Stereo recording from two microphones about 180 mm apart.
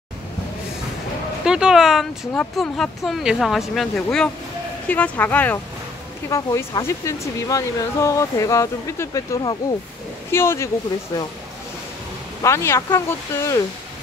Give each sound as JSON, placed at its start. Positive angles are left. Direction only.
{"t": 1.4, "sound": "speech", "side_deg": -5}
{"t": 12.4, "sound": "speech", "side_deg": 15}